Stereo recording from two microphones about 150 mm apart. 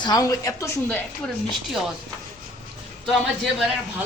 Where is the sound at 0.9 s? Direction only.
5° left (ahead or behind).